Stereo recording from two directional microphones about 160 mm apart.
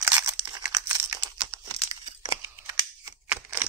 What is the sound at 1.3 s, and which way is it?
Crumpling, 30° right (ahead or behind).